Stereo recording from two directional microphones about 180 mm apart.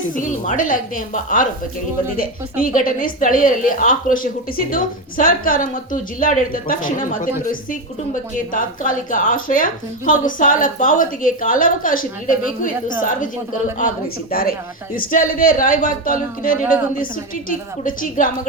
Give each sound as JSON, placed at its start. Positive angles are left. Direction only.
{"t": 0.1, "sound": "a woman's voice", "side_deg": 45}
{"t": 17.8, "sound": "a woman's voice", "side_deg": 50}